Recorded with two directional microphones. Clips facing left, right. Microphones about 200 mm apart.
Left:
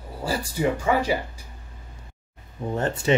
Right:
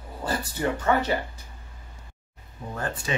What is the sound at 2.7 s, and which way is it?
Speech, 25° left (ahead or behind).